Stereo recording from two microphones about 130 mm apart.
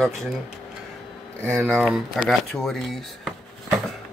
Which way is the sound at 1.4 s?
20° right (ahead or behind).